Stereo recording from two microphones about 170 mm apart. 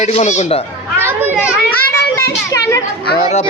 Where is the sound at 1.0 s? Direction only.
10° right (ahead or behind).